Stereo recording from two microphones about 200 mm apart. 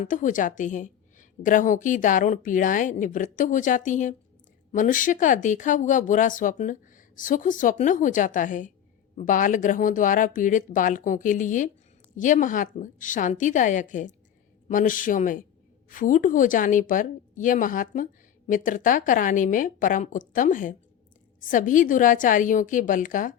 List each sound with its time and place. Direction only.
0.0 s a woman's voice: 40° left (ahead or behind)